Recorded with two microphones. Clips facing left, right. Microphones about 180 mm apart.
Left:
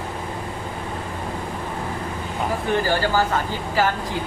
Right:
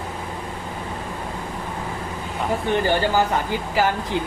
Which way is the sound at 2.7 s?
20° right (ahead or behind).